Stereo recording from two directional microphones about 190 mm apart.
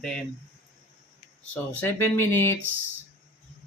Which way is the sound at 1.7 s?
10° left (ahead or behind).